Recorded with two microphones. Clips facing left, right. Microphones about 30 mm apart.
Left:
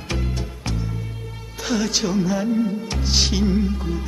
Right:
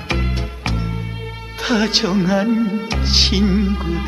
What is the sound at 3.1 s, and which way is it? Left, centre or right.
Music, right.